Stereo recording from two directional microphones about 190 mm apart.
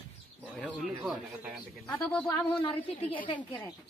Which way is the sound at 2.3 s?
30° left (ahead or behind).